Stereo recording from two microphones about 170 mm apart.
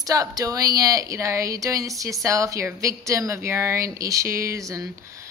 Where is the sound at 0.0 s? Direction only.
20° right (ahead or behind).